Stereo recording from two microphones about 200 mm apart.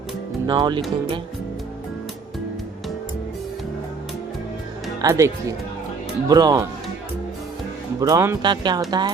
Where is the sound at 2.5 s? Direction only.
Centre (ahead or behind).